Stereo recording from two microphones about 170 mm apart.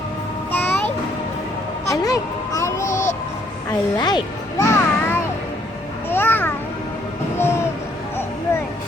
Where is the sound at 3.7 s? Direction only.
20° left (ahead or behind).